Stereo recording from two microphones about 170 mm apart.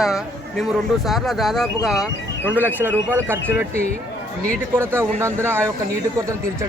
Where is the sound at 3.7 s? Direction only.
40° left (ahead or behind).